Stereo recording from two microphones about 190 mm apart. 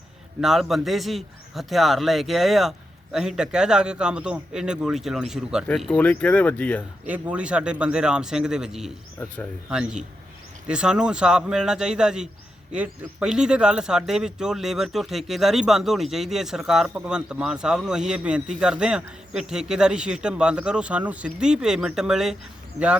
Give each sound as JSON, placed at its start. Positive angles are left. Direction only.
{"t": 0.4, "sound": "speech", "side_deg": 0}
{"t": 5.6, "sound": "speech", "side_deg": 10}
{"t": 7.1, "sound": "speech", "side_deg": -5}
{"t": 22.8, "sound": "speech", "side_deg": -35}